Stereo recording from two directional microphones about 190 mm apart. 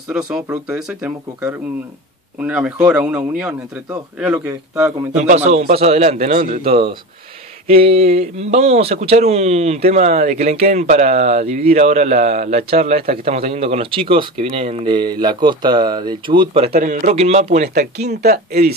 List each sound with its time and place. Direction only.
0.3 s speech: 5° right (ahead or behind)
5.1 s speech: 35° right (ahead or behind)
16.7 s speech: 40° right (ahead or behind)
17.9 s speech: 60° right (ahead or behind)